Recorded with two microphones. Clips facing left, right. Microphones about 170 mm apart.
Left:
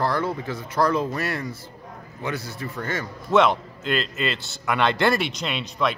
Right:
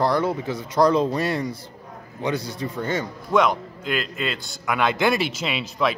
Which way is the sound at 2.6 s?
15° right (ahead or behind).